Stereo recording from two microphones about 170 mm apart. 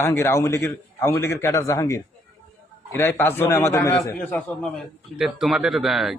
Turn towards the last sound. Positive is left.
turn(degrees=0)  # may be behind; listen again after turning